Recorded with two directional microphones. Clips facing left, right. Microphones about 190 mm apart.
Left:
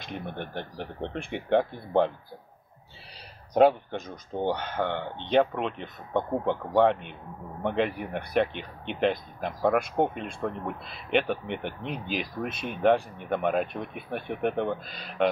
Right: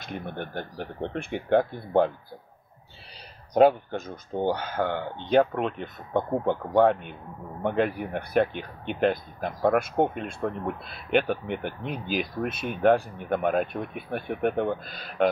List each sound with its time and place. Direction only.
0.0 s speech: 5° right (ahead or behind)
3.5 s speech: centre (ahead or behind)